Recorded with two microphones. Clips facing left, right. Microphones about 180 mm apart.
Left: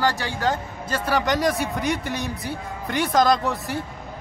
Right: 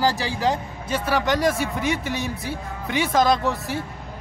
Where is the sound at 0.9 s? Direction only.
Centre (ahead or behind).